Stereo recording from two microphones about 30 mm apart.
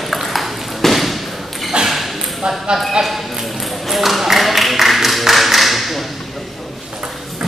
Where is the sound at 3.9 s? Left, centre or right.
Centre.